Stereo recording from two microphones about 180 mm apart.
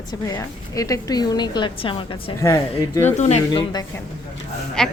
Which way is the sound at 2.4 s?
20° left (ahead or behind).